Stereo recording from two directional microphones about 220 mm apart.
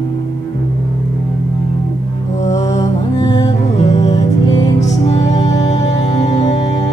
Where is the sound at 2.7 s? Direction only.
20° left (ahead or behind).